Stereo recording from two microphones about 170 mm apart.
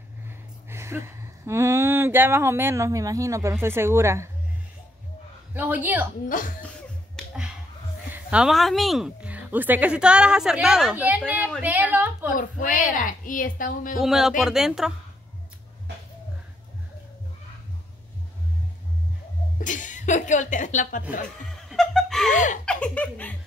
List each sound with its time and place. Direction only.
0.3 s speech: 15° right (ahead or behind)
5.5 s a woman's voice: 10° right (ahead or behind)
6.2 s a woman's voice: 55° left (ahead or behind)
8.1 s a woman's voice: 5° right (ahead or behind)
12.3 s a woman's voice: 55° left (ahead or behind)
13.9 s a woman's voice: centre (ahead or behind)
19.6 s a sound: 50° left (ahead or behind)
21.5 s snicker: 5° left (ahead or behind)
22.3 s a woman's voice: 45° left (ahead or behind)
22.7 s speech: 5° left (ahead or behind)